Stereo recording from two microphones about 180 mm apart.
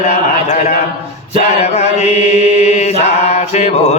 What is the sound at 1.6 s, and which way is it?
Chant, 35° left (ahead or behind).